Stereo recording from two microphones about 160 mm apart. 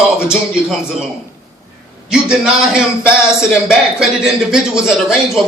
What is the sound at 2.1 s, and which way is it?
A man's voice, 5° right (ahead or behind).